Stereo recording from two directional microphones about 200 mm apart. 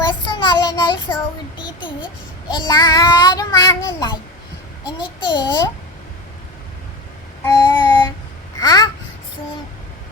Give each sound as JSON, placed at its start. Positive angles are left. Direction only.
{"t": 0.1, "sound": "child singing", "side_deg": 25}
{"t": 7.4, "sound": "child singing", "side_deg": 20}
{"t": 8.5, "sound": "babbling", "side_deg": 20}